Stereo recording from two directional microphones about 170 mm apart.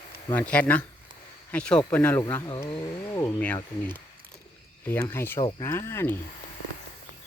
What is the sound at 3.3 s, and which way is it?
Speech, 10° left (ahead or behind).